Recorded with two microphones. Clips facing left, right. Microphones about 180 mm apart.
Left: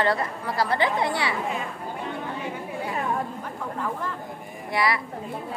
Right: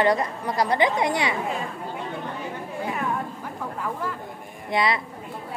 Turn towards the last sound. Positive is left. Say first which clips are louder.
# right 1 dB
turn(degrees=-20)  # may be behind; listen again after turning